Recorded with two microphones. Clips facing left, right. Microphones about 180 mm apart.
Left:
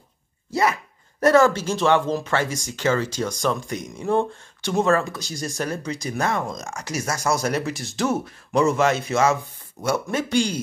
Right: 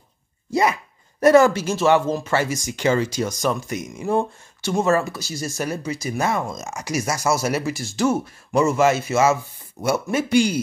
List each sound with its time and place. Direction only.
0.5 s dog: 15° right (ahead or behind)
1.2 s speech: 10° right (ahead or behind)